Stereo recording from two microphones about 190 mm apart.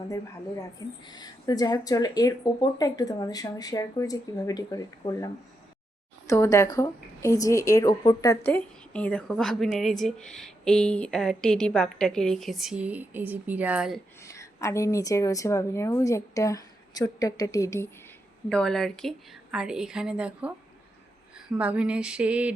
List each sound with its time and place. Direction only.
1.0 s a woman's voice: 20° left (ahead or behind)
8.4 s speech: 5° left (ahead or behind)
14.2 s a woman's voice: 15° left (ahead or behind)
18.4 s speech: 5° left (ahead or behind)
21.6 s female singing: 5° right (ahead or behind)